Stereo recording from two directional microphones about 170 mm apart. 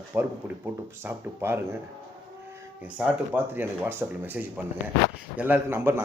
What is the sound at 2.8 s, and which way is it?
Speech, 10° right (ahead or behind).